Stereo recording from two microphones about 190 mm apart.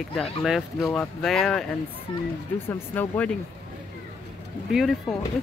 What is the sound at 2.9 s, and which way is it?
Speech, 10° left (ahead or behind).